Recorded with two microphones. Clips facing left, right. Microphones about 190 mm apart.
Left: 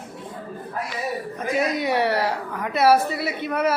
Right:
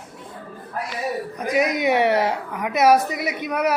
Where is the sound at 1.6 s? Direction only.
15° right (ahead or behind).